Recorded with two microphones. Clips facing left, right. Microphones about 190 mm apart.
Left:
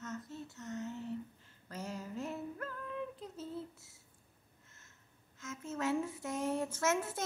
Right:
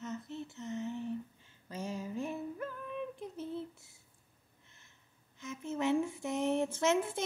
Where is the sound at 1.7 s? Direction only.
15° right (ahead or behind).